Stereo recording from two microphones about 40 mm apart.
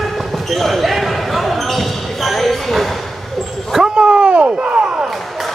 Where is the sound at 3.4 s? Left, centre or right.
Centre.